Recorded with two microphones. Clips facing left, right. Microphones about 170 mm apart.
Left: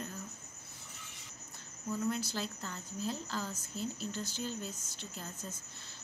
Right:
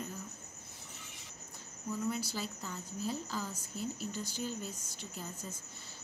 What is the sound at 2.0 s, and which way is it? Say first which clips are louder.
A woman's voice: left 1 dB; 10° right (ahead or behind).